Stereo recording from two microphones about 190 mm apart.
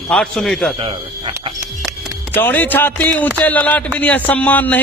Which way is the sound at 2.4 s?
10° left (ahead or behind).